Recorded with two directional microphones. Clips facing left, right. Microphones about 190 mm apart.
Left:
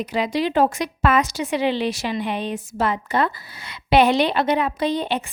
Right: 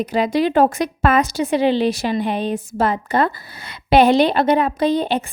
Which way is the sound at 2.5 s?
55° right (ahead or behind).